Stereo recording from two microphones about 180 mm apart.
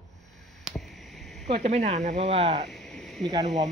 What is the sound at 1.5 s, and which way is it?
Speech, 40° right (ahead or behind).